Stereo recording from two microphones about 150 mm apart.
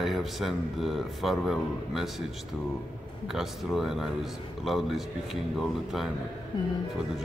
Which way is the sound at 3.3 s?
Centre (ahead or behind).